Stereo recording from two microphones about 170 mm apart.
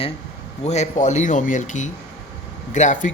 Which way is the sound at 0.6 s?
40° left (ahead or behind).